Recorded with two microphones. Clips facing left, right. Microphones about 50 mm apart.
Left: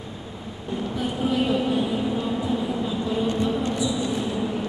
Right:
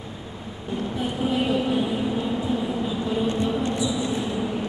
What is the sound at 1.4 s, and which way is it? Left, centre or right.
Vehicle, centre.